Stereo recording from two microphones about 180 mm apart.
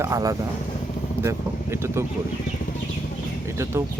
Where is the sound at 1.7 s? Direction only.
15° right (ahead or behind).